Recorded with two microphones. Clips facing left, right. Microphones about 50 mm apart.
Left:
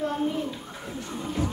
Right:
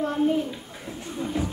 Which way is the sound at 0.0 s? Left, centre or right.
Centre.